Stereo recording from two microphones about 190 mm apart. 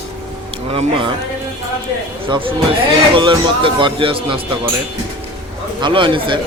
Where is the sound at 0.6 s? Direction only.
30° right (ahead or behind).